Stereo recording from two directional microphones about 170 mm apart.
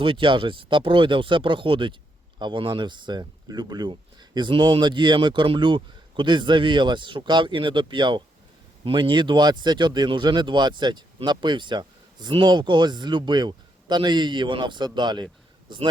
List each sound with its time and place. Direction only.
0.0 s speech: 30° right (ahead or behind)